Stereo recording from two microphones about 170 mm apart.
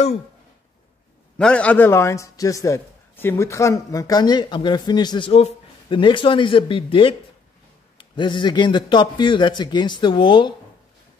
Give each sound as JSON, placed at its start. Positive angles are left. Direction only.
{"t": 1.4, "sound": "a man's voice", "side_deg": 5}